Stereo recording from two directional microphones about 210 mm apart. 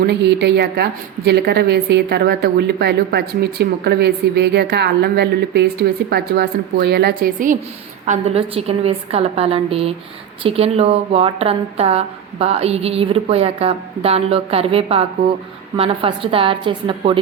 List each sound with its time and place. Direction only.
0.1 s a woman's voice: 50° right (ahead or behind); by 17.2 s 25° right (ahead or behind)